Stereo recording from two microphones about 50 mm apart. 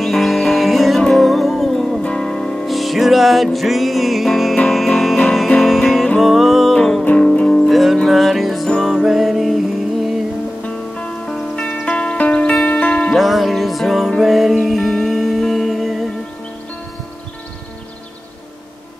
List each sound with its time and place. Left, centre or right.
0.0 s music: centre
2.0 s music: centre
2.6 s music: centre
7.2 s music: centre
7.7 s music: centre
8.6 s music: centre
9.0 s music: centre
10.6 s music: centre
13.1 s music: centre